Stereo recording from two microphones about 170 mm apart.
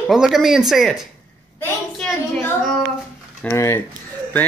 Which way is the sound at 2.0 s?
5° left (ahead or behind).